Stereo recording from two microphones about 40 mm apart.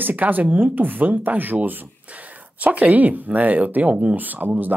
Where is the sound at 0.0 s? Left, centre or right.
Right.